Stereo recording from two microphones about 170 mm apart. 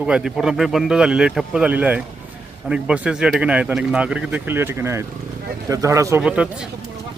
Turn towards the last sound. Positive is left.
turn(degrees=-5)  # may be behind; listen again after turning